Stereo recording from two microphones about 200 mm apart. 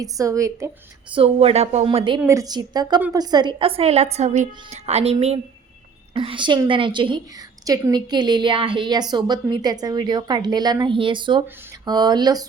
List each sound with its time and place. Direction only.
0.0 s speech: 15° right (ahead or behind)
1.1 s a woman's voice: 30° right (ahead or behind)